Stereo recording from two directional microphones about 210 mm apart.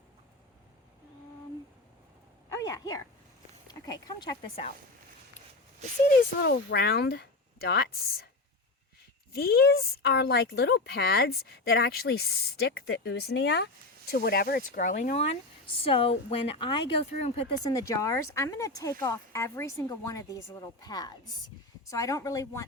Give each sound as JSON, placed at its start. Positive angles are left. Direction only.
{"t": 2.5, "sound": "a sound", "side_deg": 15}
{"t": 3.7, "sound": "speech", "side_deg": 20}
{"t": 6.4, "sound": "speech", "side_deg": 50}
{"t": 9.3, "sound": "speech", "side_deg": 45}
{"t": 17.7, "sound": "speech", "side_deg": 15}